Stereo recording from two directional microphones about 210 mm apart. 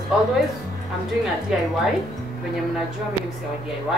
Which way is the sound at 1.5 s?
5° right (ahead or behind).